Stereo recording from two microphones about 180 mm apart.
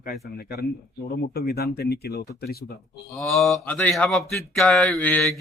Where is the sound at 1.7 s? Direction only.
60° left (ahead or behind).